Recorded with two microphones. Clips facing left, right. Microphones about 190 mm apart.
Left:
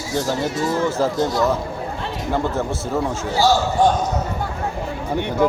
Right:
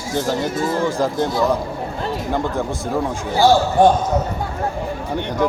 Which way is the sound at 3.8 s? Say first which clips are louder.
Right 4 dB; 55° right (ahead or behind).